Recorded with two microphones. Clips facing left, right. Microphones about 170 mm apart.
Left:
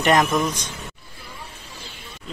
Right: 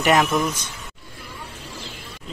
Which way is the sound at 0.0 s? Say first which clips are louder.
Even; 5° right (ahead or behind).